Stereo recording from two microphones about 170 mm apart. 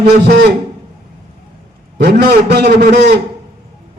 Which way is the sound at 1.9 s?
75° right (ahead or behind).